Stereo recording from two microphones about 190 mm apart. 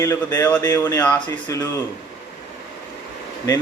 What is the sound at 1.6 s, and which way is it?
Speech, 15° left (ahead or behind).